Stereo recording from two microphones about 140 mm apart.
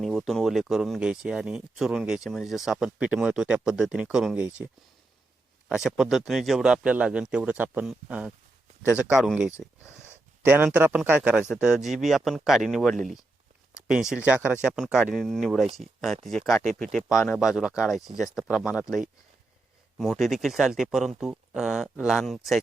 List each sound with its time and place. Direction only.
0.0 s speech: centre (ahead or behind)
5.6 s a man's voice: 5° right (ahead or behind)
9.6 s a sound: 15° left (ahead or behind)
10.4 s a man's voice: 10° right (ahead or behind)
20.0 s speech: centre (ahead or behind)